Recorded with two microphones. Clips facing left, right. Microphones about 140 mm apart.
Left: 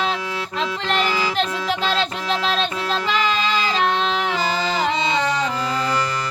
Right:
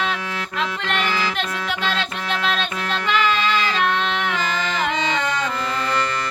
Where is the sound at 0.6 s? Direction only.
35° left (ahead or behind).